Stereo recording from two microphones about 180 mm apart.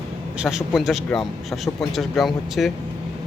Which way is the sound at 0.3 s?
Centre (ahead or behind).